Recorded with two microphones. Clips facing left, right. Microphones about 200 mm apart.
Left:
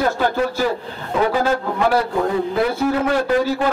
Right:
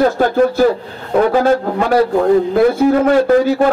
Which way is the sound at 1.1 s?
45° right (ahead or behind).